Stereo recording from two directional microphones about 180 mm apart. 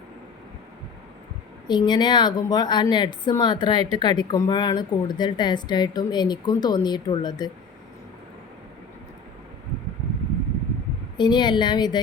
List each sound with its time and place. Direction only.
1.6 s a woman's voice: 25° left (ahead or behind)
11.2 s a woman's voice: 25° left (ahead or behind)